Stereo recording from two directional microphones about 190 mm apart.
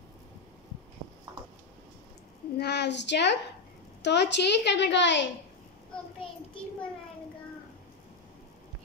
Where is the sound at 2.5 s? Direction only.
60° left (ahead or behind).